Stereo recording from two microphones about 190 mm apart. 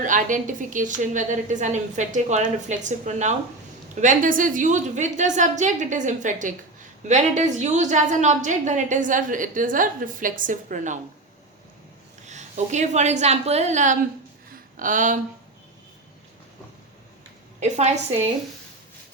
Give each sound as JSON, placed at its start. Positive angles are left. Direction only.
{"t": 0.0, "sound": "a woman's voice", "side_deg": -40}
{"t": 12.2, "sound": "a woman's voice", "side_deg": -40}